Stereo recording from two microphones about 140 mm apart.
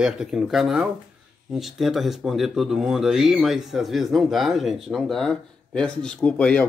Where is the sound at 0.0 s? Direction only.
5° right (ahead or behind).